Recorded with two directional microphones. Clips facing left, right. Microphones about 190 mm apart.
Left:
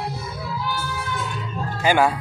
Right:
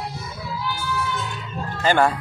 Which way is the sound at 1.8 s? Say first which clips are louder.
Even; 10° left (ahead or behind).